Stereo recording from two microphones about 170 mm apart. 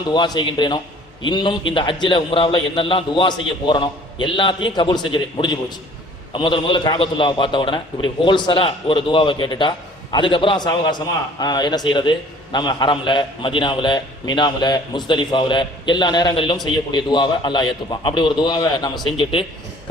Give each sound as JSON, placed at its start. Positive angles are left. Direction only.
{"t": 0.0, "sound": "a man's voice", "side_deg": 25}